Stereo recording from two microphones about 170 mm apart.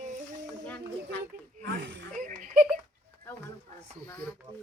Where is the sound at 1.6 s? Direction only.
90° right.